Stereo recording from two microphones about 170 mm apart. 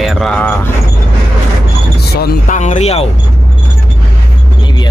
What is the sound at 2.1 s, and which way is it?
Speech, 50° left (ahead or behind).